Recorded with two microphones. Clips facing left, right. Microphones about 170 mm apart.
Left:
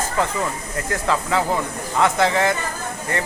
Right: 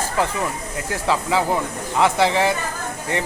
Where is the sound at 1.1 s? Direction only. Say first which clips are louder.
Right 1 dB; 15° right (ahead or behind).